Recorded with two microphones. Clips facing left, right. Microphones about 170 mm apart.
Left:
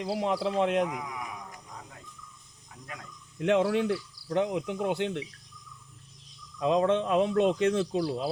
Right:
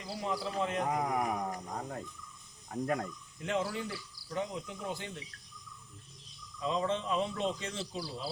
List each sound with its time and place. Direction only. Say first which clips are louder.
0.0 s speech: left 8 dB; 75° left (ahead or behind)
0.9 s a sound: right 5 dB; 50° right (ahead or behind)
2.6 s speech: right 12 dB; 45° right (ahead or behind)
3.3 s speech: left 10 dB; 70° left (ahead or behind)
6.6 s speech: left 8 dB; 70° left (ahead or behind)